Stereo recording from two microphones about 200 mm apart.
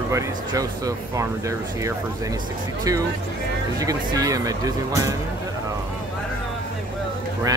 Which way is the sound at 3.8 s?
15° right (ahead or behind).